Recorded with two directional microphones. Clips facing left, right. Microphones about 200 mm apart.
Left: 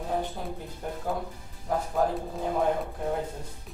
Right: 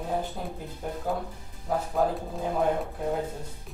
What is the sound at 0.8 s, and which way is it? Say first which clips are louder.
Speech: right 1 dB; 5° right (ahead or behind).